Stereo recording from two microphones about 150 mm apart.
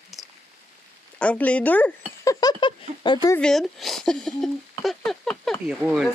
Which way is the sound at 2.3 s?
25° left (ahead or behind).